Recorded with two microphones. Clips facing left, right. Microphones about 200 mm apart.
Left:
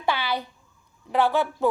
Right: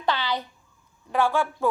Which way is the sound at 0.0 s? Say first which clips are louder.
Even; 10° left (ahead or behind).